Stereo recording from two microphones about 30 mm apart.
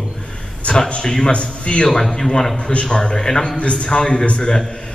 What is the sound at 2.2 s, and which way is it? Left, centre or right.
A man's voice, centre.